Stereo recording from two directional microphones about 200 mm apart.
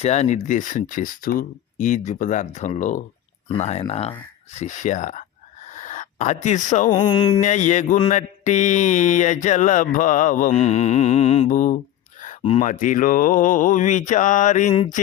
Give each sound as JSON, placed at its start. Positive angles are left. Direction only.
{"t": 0.0, "sound": "mantra", "side_deg": 35}
{"t": 5.6, "sound": "a sound", "side_deg": 40}
{"t": 6.9, "sound": "a sound", "side_deg": 20}
{"t": 7.4, "sound": "mantra", "side_deg": 35}
{"t": 12.4, "sound": "speech", "side_deg": 25}
{"t": 12.6, "sound": "mantra", "side_deg": 40}